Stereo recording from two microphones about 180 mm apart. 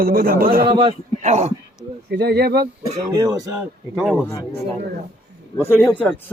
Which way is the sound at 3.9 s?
5° right (ahead or behind).